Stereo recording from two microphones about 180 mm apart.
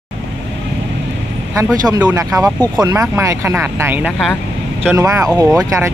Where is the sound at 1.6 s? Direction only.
20° right (ahead or behind).